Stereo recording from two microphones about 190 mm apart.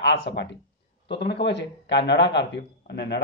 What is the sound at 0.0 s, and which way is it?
Speech, 65° left (ahead or behind).